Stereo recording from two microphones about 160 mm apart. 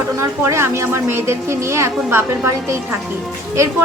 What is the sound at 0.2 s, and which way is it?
A woman's voice, 20° right (ahead or behind).